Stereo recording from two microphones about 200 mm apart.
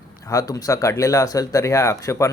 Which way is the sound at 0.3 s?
15° left (ahead or behind).